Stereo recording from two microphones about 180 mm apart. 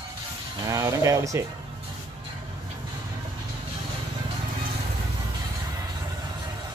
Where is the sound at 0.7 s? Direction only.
15° right (ahead or behind).